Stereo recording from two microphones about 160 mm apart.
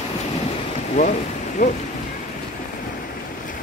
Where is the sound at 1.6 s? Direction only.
50° left (ahead or behind).